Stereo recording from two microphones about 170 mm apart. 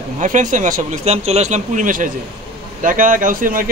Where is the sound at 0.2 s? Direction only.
50° right (ahead or behind).